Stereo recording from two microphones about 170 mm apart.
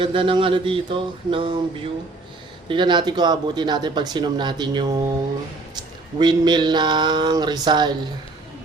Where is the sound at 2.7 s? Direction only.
25° right (ahead or behind).